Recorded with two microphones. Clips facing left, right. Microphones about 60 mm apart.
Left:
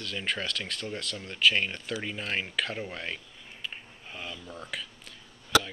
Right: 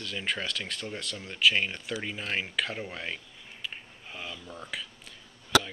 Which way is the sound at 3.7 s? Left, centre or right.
Centre.